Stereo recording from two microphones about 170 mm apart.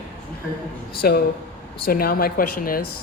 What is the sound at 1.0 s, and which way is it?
A man's voice, 65° left (ahead or behind).